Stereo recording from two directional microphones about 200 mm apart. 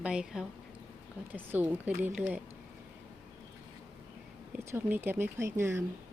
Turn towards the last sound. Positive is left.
turn(degrees=-15)  # may be behind; listen again after turning